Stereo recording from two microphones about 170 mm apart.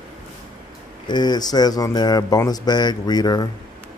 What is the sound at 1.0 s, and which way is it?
Speech, 25° left (ahead or behind).